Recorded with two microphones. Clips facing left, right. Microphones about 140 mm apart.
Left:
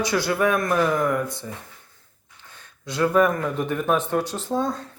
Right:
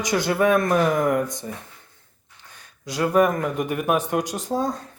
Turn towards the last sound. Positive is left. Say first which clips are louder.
# even
turn(degrees=-15)  # may be behind; listen again after turning